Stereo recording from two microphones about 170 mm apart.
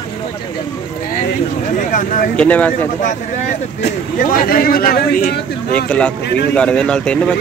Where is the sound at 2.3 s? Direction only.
10° left (ahead or behind).